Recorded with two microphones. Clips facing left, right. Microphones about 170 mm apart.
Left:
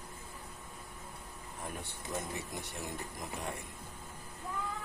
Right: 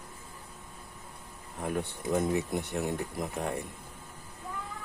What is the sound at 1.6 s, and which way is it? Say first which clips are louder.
Speech: right 12 dB; 65° right (ahead or behind).